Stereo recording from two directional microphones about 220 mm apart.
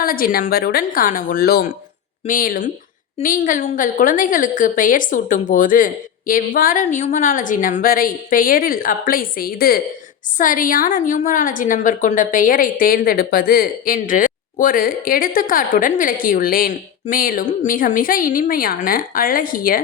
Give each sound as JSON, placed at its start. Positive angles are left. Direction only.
{"t": 0.0, "sound": "a woman's voice", "side_deg": 40}